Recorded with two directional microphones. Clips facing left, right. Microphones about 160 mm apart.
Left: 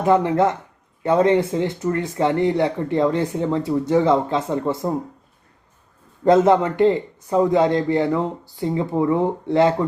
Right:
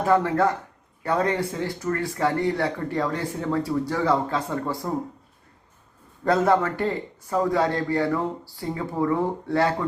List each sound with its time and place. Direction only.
0.0 s speech: 20° left (ahead or behind)
6.2 s speech: 20° left (ahead or behind)